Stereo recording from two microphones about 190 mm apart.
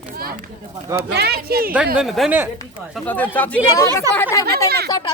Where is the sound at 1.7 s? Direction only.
5° right (ahead or behind).